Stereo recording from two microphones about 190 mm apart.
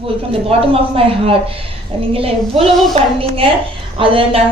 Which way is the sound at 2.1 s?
30° right (ahead or behind).